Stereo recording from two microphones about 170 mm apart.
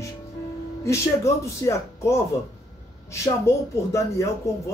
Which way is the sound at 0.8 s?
15° left (ahead or behind).